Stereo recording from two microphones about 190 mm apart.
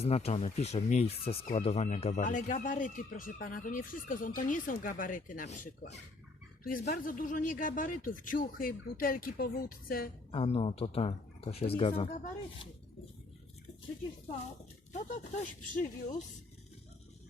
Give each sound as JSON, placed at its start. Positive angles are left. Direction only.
{"t": 0.0, "sound": "speech", "side_deg": 35}
{"t": 6.7, "sound": "speech", "side_deg": 45}
{"t": 10.3, "sound": "speech", "side_deg": 30}
{"t": 14.9, "sound": "speech", "side_deg": 40}